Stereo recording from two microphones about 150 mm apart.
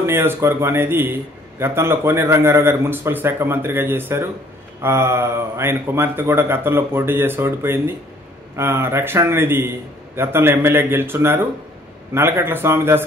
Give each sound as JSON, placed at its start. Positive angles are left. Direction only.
{"t": 0.0, "sound": "a man's voice", "side_deg": -15}